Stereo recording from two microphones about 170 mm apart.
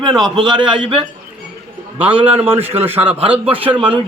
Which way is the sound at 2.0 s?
30° right (ahead or behind).